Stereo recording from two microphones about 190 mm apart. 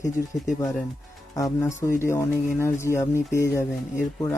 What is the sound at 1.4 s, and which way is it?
Speech, 15° left (ahead or behind).